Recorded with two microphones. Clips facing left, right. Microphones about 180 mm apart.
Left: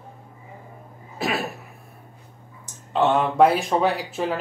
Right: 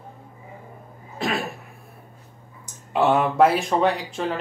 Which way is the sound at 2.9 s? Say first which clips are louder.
Right 1 dB; 10° right (ahead or behind).